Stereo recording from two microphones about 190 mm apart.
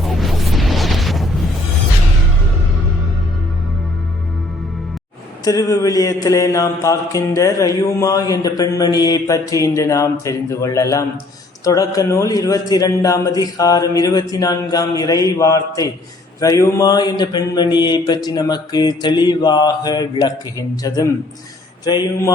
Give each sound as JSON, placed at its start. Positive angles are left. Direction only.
{"t": 0.0, "sound": "music", "side_deg": 0}
{"t": 5.5, "sound": "mantra", "side_deg": 20}